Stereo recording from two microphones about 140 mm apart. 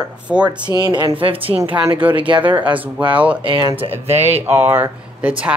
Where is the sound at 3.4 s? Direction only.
35° right (ahead or behind).